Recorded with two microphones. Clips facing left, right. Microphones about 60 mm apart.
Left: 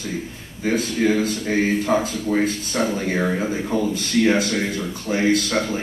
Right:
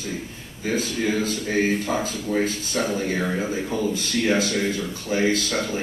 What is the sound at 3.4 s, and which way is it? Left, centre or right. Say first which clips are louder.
A man's voice: left 3 dB; left.